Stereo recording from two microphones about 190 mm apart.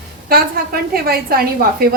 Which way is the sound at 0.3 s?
50° right (ahead or behind).